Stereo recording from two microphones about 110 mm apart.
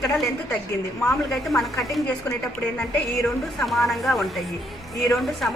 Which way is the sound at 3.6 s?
Centre (ahead or behind).